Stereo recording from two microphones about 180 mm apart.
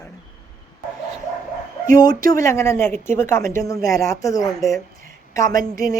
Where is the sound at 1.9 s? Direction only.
20° left (ahead or behind).